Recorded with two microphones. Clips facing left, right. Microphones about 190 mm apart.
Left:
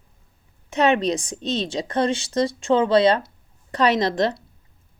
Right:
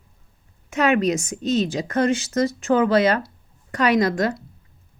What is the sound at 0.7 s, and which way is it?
A woman's voice, 35° left (ahead or behind).